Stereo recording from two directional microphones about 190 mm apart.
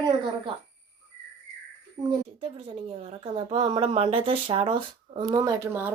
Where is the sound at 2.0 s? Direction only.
30° right (ahead or behind).